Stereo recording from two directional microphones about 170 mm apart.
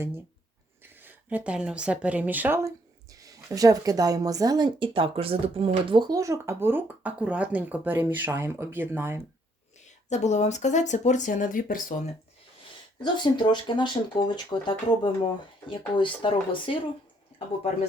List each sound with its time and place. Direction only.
1.5 s speech: 5° right (ahead or behind)
10.1 s speech: 40° left (ahead or behind)
13.0 s speech: 25° left (ahead or behind)